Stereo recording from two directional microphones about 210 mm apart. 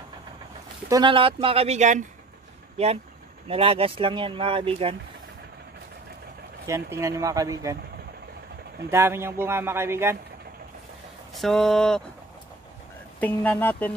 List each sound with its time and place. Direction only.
0.8 s speech: 20° right (ahead or behind)
6.7 s a man's voice: 15° right (ahead or behind)
8.9 s a man's voice: 10° right (ahead or behind)
11.3 s speech: centre (ahead or behind)
13.2 s speech: 5° left (ahead or behind)